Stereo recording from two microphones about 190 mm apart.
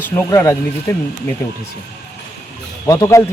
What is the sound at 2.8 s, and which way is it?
Speech, 15° left (ahead or behind).